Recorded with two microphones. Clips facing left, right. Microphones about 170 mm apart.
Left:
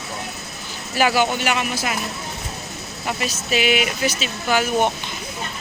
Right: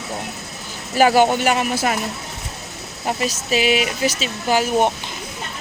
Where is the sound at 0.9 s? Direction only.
45° right (ahead or behind).